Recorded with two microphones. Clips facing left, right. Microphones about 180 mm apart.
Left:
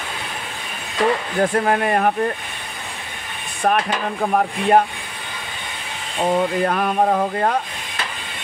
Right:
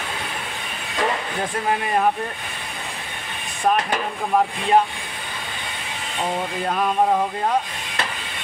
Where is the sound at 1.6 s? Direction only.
55° left (ahead or behind).